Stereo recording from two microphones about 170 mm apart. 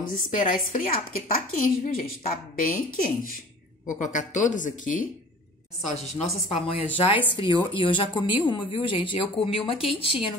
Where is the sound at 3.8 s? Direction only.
45° left (ahead or behind).